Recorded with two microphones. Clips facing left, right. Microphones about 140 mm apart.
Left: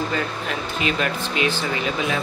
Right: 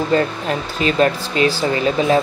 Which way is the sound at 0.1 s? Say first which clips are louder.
Right 8 dB; 35° right (ahead or behind).